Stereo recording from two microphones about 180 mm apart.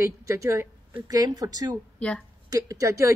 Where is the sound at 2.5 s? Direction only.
20° right (ahead or behind).